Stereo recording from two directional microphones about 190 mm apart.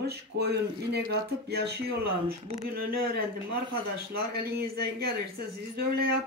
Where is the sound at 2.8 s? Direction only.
55° right (ahead or behind).